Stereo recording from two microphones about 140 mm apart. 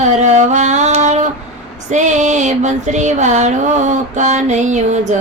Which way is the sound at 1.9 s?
60° right (ahead or behind).